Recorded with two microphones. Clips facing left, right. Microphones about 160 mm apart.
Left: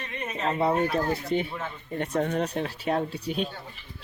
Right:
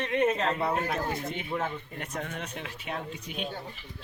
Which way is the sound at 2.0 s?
35° left (ahead or behind).